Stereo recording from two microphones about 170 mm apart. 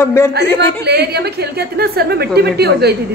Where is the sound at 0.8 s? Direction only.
75° right (ahead or behind).